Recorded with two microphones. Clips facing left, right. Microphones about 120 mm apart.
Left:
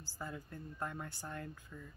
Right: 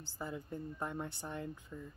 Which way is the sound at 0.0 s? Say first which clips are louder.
Right 3 dB; 20° right (ahead or behind).